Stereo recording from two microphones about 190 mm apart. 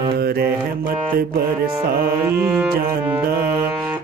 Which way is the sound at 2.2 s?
10° right (ahead or behind).